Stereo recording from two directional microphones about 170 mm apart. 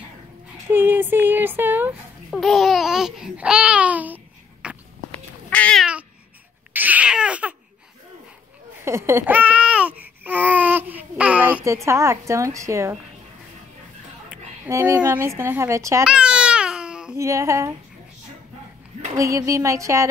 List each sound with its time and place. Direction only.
0.7 s a sound: 10° right (ahead or behind)
5.5 s cat: 5° left (ahead or behind)
6.7 s baby cry: 10° right (ahead or behind)
8.8 s babbling: 15° right (ahead or behind)
14.7 s a woman's voice: 15° right (ahead or behind)
16.0 s babbling: 5° right (ahead or behind)
17.2 s a woman's voice: 15° right (ahead or behind)
19.1 s a woman's voice: 20° right (ahead or behind)